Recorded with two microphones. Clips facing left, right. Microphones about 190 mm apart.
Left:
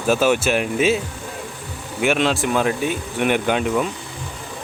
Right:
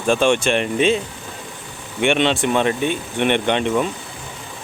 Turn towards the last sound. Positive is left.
turn(degrees=5)  # may be behind; listen again after turning